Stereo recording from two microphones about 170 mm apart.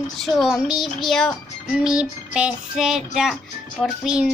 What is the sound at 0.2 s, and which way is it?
A woman's voice, centre (ahead or behind).